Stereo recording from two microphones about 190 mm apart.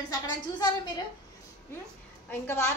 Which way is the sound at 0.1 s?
20° left (ahead or behind).